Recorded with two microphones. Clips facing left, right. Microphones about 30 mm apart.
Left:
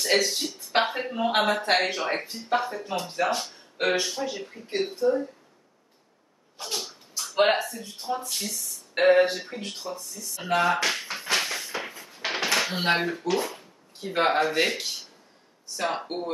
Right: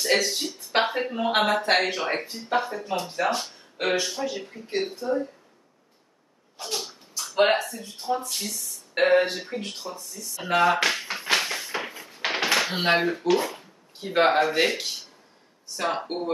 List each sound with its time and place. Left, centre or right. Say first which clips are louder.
0.0 s speech: even; centre
6.6 s speech: right 1 dB; centre
11.0 s a sound: right 2 dB; centre
12.6 s speech: right 2 dB; centre